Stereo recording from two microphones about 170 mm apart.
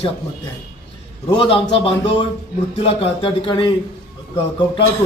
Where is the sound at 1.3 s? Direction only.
30° left (ahead or behind).